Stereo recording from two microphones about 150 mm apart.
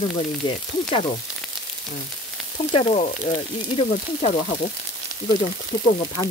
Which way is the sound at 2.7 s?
40° left (ahead or behind).